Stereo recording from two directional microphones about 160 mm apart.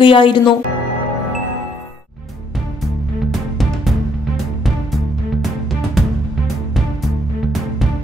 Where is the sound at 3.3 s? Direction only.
Centre (ahead or behind).